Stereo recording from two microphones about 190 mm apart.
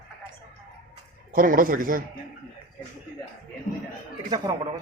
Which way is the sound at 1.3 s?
45° right (ahead or behind).